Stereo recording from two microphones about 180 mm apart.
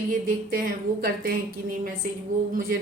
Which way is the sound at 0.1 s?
55° right (ahead or behind).